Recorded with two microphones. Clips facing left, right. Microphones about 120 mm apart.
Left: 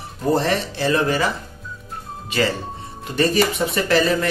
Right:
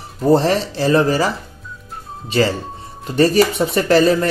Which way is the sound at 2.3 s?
35° right (ahead or behind).